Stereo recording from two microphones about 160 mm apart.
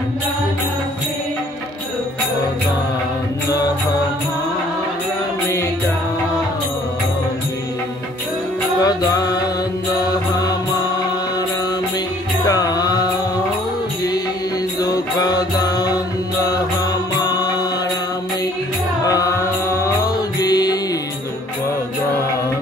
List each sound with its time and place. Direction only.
8.8 s music: 25° left (ahead or behind)
12.4 s music: 25° left (ahead or behind)
14.8 s music: 25° left (ahead or behind)
17.2 s music: 25° left (ahead or behind)
19.0 s music: 20° left (ahead or behind)